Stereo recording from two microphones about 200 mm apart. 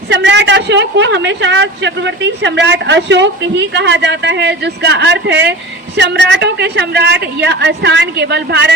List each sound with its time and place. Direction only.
0.1 s speech: 60° right (ahead or behind)